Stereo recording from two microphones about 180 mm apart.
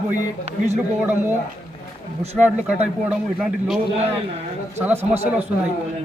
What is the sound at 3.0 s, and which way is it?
A man's voice, 5° right (ahead or behind).